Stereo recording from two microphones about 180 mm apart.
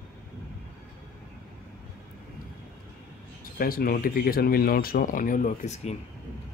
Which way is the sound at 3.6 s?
55° left (ahead or behind).